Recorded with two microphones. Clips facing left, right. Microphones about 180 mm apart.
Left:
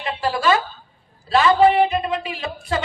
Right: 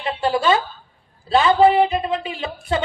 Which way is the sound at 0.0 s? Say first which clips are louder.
Right 2 dB; 30° right (ahead or behind).